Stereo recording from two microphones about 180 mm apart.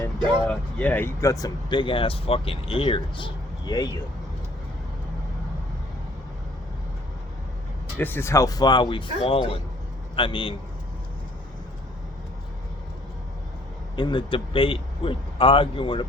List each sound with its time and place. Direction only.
0.4 s speech: 10° left (ahead or behind)
7.9 s speech: 10° left (ahead or behind); by 10.5 s 30° left (ahead or behind)
13.9 s speech: 25° left (ahead or behind)